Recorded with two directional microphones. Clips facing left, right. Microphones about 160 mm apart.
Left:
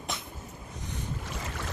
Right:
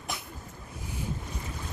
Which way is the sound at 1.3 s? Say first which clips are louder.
Left 2 dB; 90° left.